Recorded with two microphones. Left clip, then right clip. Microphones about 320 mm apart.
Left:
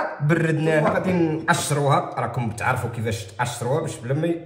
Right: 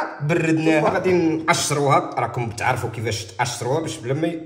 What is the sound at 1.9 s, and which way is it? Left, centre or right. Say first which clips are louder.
Speech: right 3 dB; centre.